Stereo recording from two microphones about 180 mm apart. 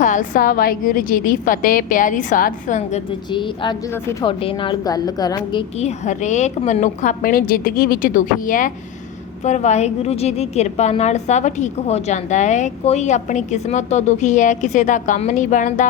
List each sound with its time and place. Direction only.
0.0 s a woman's voice: 45° left (ahead or behind)
3.3 s a woman's voice: 25° left (ahead or behind)
5.8 s a woman's voice: 45° left (ahead or behind)